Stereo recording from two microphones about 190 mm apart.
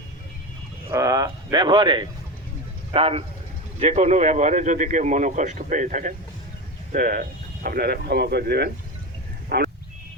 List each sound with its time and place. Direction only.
0.9 s speech: 15° right (ahead or behind); by 8.7 s 60° right (ahead or behind)